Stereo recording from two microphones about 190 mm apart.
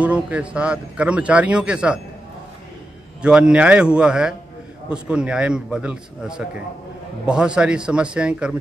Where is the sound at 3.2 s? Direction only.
5° right (ahead or behind).